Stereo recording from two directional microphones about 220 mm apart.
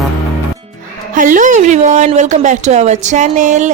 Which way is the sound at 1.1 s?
35° right (ahead or behind).